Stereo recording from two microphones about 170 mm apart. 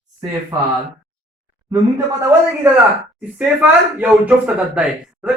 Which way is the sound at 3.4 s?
10° right (ahead or behind).